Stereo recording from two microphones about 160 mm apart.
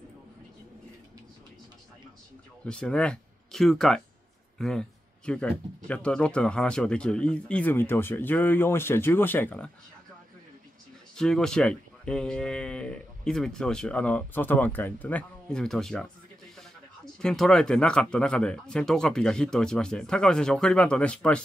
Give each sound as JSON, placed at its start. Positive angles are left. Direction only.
{"t": 2.6, "sound": "speech", "side_deg": 5}
{"t": 4.6, "sound": "a sound", "side_deg": 5}
{"t": 5.9, "sound": "speech", "side_deg": 5}
{"t": 11.1, "sound": "speech", "side_deg": 5}